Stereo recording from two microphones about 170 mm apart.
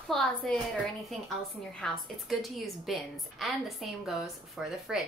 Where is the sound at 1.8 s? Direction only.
Centre (ahead or behind).